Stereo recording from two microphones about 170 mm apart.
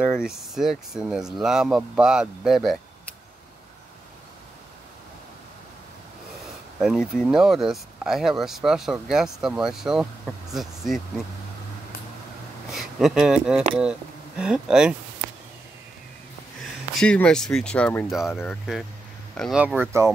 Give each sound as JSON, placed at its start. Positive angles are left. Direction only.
{"t": 0.0, "sound": "speech", "side_deg": -5}
{"t": 6.4, "sound": "speech", "side_deg": 0}
{"t": 12.7, "sound": "speech", "side_deg": 0}
{"t": 17.0, "sound": "speech", "side_deg": 5}
{"t": 19.8, "sound": "speech", "side_deg": -15}